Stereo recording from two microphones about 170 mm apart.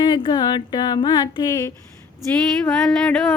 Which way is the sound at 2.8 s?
5° left (ahead or behind).